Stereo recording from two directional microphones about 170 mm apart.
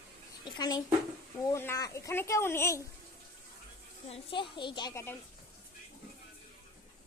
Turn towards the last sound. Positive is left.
turn(degrees=15)  # may be behind; listen again after turning